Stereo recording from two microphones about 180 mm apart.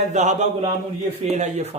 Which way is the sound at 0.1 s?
40° right (ahead or behind).